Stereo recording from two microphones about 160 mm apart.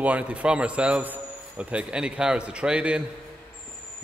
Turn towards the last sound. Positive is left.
turn(degrees=-5)  # may be behind; listen again after turning